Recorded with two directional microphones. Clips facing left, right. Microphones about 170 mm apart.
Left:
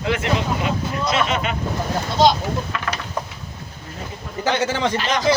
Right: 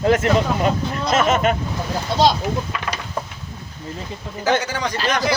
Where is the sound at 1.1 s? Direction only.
45° right (ahead or behind).